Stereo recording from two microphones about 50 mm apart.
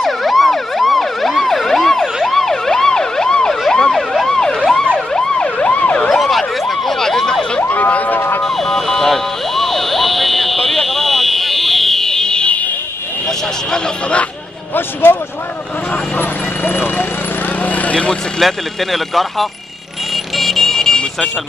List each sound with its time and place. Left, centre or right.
0.0 s emergency vehicle: centre
5.6 s emergency vehicle: left
6.1 s emergency vehicle: centre
7.6 s emergency vehicle: left
8.4 s emergency vehicle: centre
16.2 s vehicle: left
17.6 s a sound: left
18.4 s speech: centre
20.3 s vehicle: centre